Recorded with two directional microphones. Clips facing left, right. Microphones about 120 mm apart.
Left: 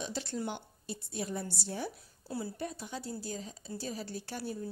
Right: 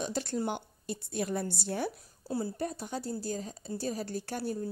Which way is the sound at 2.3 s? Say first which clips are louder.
Right 4 dB; 40° right (ahead or behind).